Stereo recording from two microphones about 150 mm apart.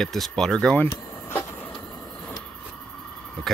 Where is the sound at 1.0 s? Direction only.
15° left (ahead or behind).